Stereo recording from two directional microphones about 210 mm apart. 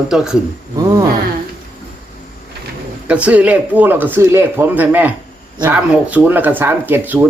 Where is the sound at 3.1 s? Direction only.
5° right (ahead or behind).